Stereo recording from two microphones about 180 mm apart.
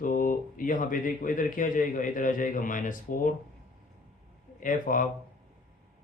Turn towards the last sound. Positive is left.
turn(degrees=45)  # may be behind; listen again after turning